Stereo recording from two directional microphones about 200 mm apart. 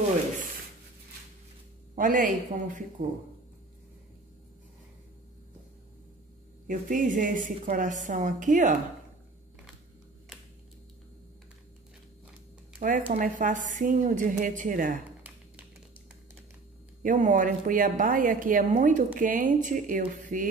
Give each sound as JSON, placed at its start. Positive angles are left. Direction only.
{"t": 2.0, "sound": "a woman's voice", "side_deg": -40}
{"t": 3.0, "sound": "speech", "side_deg": -55}
{"t": 6.7, "sound": "a woman's voice", "side_deg": -40}
{"t": 13.1, "sound": "a woman's voice", "side_deg": -40}
{"t": 15.0, "sound": "a sound", "side_deg": -10}
{"t": 17.0, "sound": "a woman's voice", "side_deg": -40}